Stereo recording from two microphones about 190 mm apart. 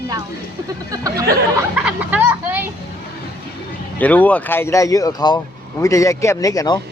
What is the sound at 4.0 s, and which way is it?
Speech, 10° left (ahead or behind).